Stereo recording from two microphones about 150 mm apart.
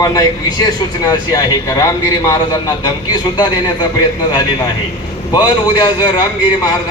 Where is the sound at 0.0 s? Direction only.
25° left (ahead or behind).